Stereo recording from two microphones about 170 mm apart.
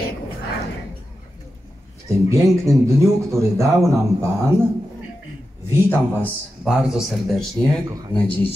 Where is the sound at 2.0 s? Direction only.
20° right (ahead or behind).